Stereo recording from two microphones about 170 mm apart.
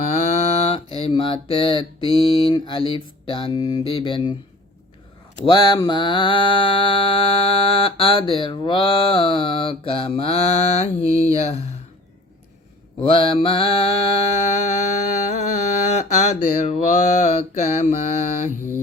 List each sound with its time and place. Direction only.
0.1 s mantra: 40° left (ahead or behind)
5.5 s mantra: 25° left (ahead or behind)
13.0 s mantra: 30° left (ahead or behind)